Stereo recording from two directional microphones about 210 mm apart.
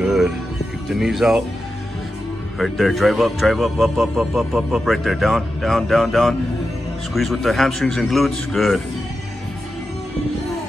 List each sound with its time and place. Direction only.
0.0 s music: 5° right (ahead or behind)
0.8 s speech: centre (ahead or behind)
2.6 s speech: centre (ahead or behind)